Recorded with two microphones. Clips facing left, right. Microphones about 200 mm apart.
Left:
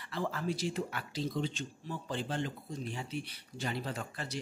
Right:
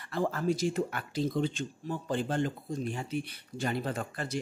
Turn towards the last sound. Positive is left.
turn(degrees=-50)  # may be behind; listen again after turning